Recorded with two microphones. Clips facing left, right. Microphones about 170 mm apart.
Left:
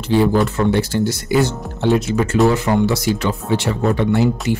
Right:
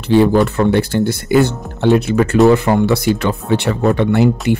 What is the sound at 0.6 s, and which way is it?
Speech, 60° right (ahead or behind).